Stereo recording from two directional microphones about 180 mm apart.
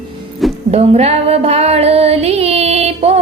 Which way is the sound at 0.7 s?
35° right (ahead or behind).